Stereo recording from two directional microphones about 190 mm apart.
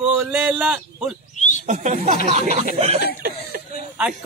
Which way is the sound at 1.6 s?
40° right (ahead or behind).